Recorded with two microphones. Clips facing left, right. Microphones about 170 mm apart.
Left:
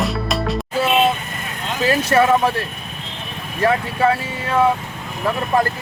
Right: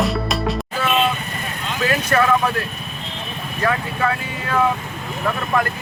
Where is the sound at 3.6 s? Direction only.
30° left (ahead or behind).